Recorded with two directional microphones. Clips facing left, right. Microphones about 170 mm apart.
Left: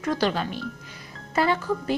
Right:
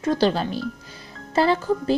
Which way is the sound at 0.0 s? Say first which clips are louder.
Right 4 dB; 30° right (ahead or behind).